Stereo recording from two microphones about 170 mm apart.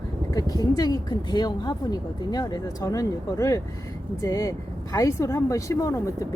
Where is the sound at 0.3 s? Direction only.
20° left (ahead or behind).